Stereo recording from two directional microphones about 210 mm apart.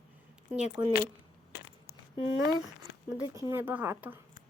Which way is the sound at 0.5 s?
10° right (ahead or behind).